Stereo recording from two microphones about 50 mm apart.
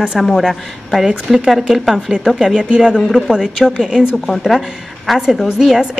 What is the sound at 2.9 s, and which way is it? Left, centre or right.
Speech, centre.